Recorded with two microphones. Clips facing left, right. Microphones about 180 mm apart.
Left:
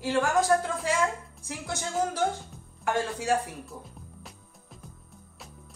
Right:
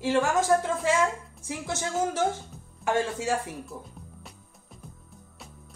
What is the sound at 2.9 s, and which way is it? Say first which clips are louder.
Speech: right 2 dB; 25° right (ahead or behind).